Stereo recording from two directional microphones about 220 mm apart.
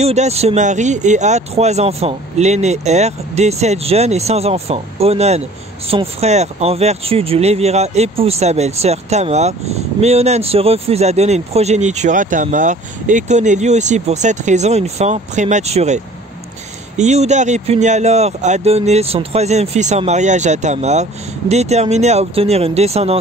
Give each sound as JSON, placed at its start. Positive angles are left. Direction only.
{"t": 0.0, "sound": "speech", "side_deg": -30}